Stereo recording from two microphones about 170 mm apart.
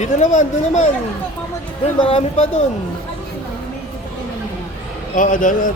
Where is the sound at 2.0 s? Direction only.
35° left (ahead or behind).